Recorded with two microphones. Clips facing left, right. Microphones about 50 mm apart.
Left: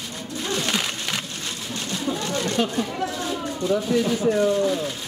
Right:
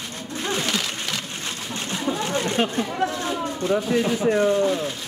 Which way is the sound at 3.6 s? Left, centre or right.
Right.